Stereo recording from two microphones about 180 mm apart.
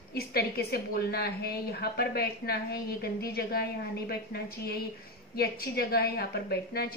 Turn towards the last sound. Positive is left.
turn(degrees=60)  # may be behind; listen again after turning